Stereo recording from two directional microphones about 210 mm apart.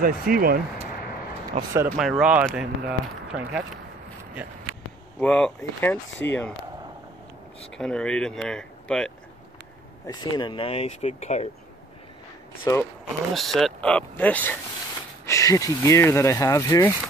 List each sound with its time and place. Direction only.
0.0 s speech: 45° right (ahead or behind)
1.5 s speech: 30° right (ahead or behind)
2.0 s speech: centre (ahead or behind)
5.2 s speech: 5° left (ahead or behind)
7.7 s speech: 5° left (ahead or behind)
10.0 s speech: 20° left (ahead or behind)
12.7 s speech: 15° left (ahead or behind)
13.3 s speech: centre (ahead or behind)